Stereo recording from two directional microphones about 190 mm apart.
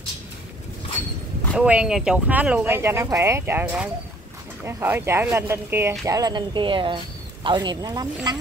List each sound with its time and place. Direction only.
1.6 s speech: 5° right (ahead or behind); by 8.4 s 20° right (ahead or behind)